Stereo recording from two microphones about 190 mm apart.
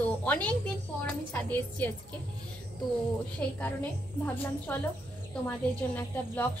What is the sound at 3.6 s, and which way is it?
A woman's voice, 10° left (ahead or behind).